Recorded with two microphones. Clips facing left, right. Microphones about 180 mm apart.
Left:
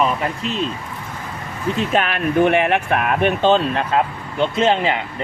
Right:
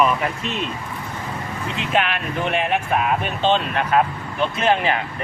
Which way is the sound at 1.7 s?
40° left (ahead or behind).